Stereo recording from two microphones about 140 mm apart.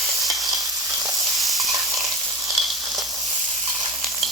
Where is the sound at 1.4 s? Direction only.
Centre (ahead or behind).